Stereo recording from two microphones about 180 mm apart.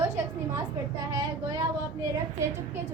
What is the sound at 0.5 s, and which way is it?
A woman's voice, 20° right (ahead or behind).